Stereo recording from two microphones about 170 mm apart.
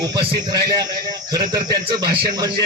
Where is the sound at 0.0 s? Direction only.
25° right (ahead or behind).